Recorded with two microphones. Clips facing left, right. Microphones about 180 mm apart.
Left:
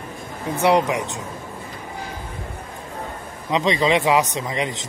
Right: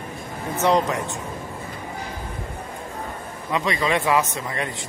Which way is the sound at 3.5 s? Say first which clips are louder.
Left 4 dB; 20° left (ahead or behind).